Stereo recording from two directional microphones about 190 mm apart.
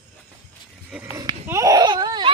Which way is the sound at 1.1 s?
20° right (ahead or behind).